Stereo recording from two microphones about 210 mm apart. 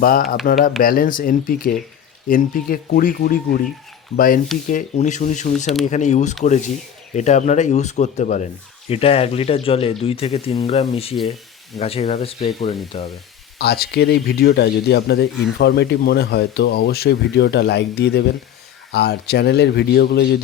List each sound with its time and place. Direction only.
0.0 s speech: 45° left (ahead or behind)
4.7 s speech: 35° left (ahead or behind)
13.6 s speech: 50° left (ahead or behind)